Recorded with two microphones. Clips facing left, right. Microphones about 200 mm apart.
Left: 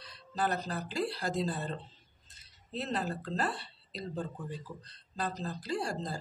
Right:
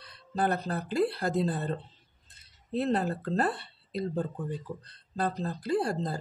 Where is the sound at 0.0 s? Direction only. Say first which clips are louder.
Right 4 dB; 55° right (ahead or behind).